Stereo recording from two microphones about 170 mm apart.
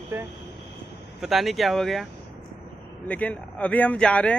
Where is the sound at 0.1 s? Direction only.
15° right (ahead or behind).